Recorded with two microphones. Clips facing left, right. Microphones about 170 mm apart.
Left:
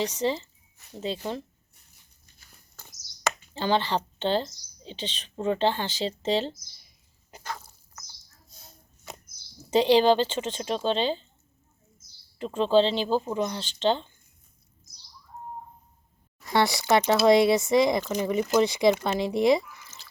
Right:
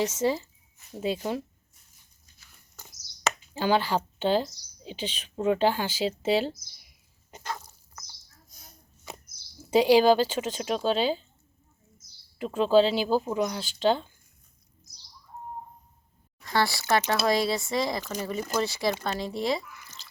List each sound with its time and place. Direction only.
0.1 s speech: 5° right (ahead or behind)
3.5 s speech: 10° right (ahead or behind)
8.4 s a sound: 25° left (ahead or behind)
9.6 s speech: 10° right (ahead or behind)
12.4 s speech: 5° right (ahead or behind)
16.4 s speech: 20° left (ahead or behind)